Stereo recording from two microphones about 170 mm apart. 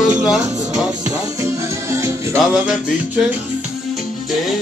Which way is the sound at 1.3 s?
15° right (ahead or behind).